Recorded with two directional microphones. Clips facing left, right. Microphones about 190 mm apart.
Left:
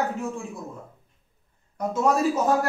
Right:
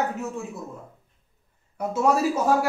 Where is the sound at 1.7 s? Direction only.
5° right (ahead or behind).